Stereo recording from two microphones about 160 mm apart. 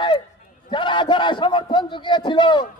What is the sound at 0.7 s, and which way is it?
A man's voice, 30° left (ahead or behind).